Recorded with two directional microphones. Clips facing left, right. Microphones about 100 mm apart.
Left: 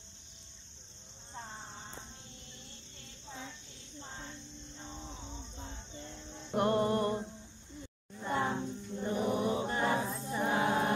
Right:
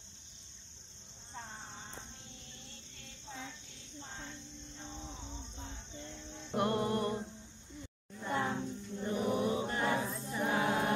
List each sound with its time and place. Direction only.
6.5 s music: 25° left (ahead or behind)
8.3 s mantra: 25° left (ahead or behind)